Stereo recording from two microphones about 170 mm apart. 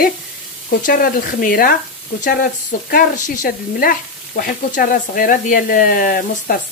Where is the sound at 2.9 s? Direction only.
55° left (ahead or behind).